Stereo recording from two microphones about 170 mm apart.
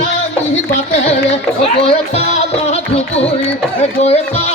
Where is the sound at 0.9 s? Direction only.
40° left (ahead or behind).